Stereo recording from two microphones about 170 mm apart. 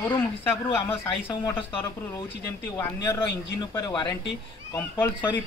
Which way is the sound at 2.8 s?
15° left (ahead or behind).